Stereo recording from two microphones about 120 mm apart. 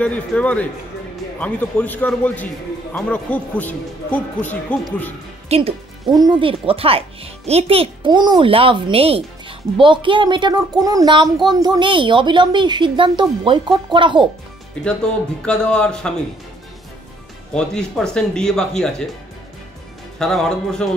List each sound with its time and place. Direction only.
0.0 s a man's voice: 10° left (ahead or behind)
5.5 s speech: 55° right (ahead or behind)
6.0 s speech: 35° right (ahead or behind)
6.6 s a child's voice: 50° right (ahead or behind)
15.4 s a man's voice: 5° left (ahead or behind)
17.6 s speech: 5° left (ahead or behind)
20.2 s speech: 5° left (ahead or behind)